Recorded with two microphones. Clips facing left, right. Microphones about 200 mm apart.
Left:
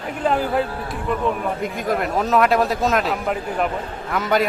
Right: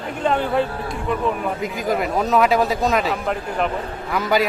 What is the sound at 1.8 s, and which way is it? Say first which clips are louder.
Speech: right 1 dB; centre (ahead or behind).